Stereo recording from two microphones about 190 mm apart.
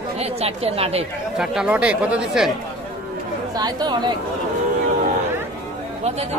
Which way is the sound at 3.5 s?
20° right (ahead or behind).